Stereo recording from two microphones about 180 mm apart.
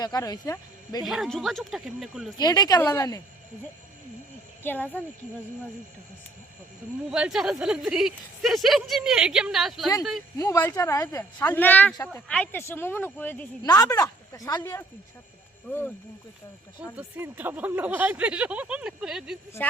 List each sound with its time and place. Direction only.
0.0 s speech: 20° left (ahead or behind)
1.0 s speech: centre (ahead or behind)
2.4 s speech: 20° left (ahead or behind)
4.6 s speech: 10° left (ahead or behind)
7.1 s speech: 5° right (ahead or behind)
10.3 s speech: 15° left (ahead or behind)
13.6 s speech: 20° left (ahead or behind)
17.0 s speech: 10° right (ahead or behind)